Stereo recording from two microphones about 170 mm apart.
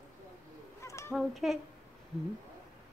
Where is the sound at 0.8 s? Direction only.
15° left (ahead or behind).